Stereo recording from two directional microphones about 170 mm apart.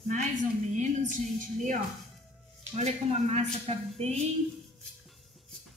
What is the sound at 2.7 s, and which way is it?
A woman's voice, 40° right (ahead or behind).